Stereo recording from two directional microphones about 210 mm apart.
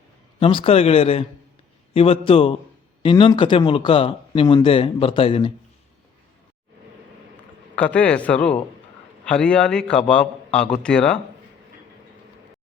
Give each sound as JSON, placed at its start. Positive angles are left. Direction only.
{"t": 0.3, "sound": "speech", "side_deg": 25}
{"t": 7.3, "sound": "a man's voice", "side_deg": 5}